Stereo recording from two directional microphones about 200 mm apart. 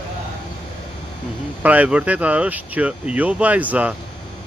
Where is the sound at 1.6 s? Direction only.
5° right (ahead or behind).